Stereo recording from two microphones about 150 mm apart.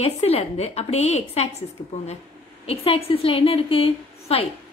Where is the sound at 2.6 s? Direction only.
40° left (ahead or behind).